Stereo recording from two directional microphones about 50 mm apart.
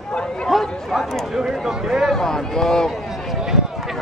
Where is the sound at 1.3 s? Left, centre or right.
Centre.